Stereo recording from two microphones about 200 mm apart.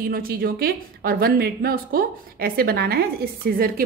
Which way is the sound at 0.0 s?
45° right (ahead or behind).